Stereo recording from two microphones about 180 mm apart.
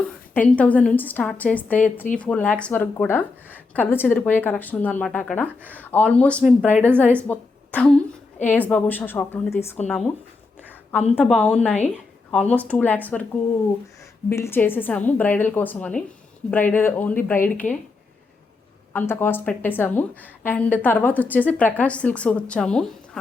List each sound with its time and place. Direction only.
0.3 s a woman's voice: 5° left (ahead or behind)
9.8 s a woman's voice: centre (ahead or behind)
11.2 s a woman's voice: 5° left (ahead or behind)
14.3 s a woman's voice: 15° left (ahead or behind)
18.9 s a woman's voice: 10° left (ahead or behind)